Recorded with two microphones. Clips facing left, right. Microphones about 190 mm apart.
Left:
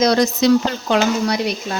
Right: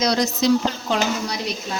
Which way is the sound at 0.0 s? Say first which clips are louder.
Left 5 dB; 55° left (ahead or behind).